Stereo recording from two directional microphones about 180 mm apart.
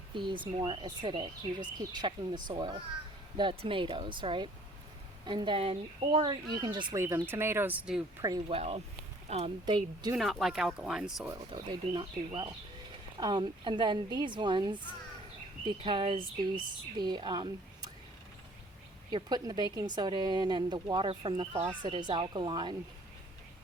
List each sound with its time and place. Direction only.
0.1 s speech: 25° right (ahead or behind)
6.7 s speech: 15° right (ahead or behind)
8.2 s speech: 20° right (ahead or behind)
8.5 s speech: 35° right (ahead or behind)
10.2 s speech: centre (ahead or behind)
11.3 s speech: 20° right (ahead or behind)
19.1 s speech: 25° right (ahead or behind)